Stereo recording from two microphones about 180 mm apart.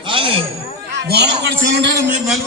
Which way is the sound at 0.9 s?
70° right (ahead or behind).